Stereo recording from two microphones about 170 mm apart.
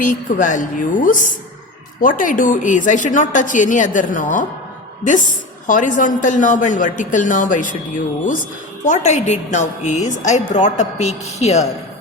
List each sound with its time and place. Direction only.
0.0 s a woman's voice: 50° left (ahead or behind)
5.6 s a woman's voice: 50° left (ahead or behind)